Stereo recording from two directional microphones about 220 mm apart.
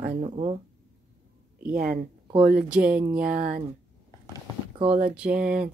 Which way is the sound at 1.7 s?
40° right (ahead or behind).